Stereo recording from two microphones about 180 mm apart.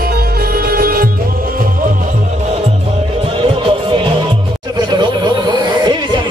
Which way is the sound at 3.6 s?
30° right (ahead or behind).